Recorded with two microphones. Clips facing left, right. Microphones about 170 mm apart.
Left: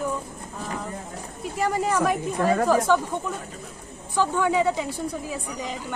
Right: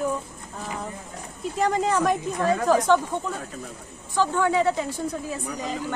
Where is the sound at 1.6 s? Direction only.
5° left (ahead or behind).